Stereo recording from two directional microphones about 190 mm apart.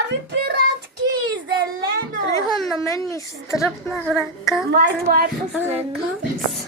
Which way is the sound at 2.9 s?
15° left (ahead or behind).